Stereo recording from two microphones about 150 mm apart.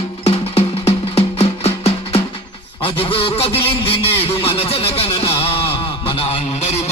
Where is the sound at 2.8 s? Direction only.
35° left (ahead or behind).